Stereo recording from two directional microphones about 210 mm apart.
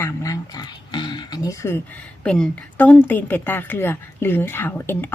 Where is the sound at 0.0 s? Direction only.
15° left (ahead or behind).